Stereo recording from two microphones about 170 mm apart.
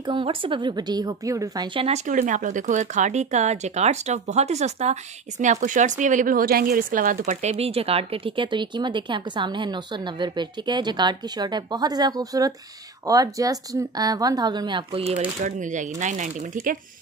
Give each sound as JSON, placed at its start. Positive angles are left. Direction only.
{"t": 0.0, "sound": "speech", "side_deg": -30}
{"t": 2.0, "sound": "speech", "side_deg": -50}